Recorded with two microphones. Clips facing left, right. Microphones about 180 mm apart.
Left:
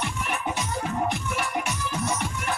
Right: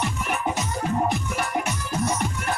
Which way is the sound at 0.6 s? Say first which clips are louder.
Right 3 dB; 40° right (ahead or behind).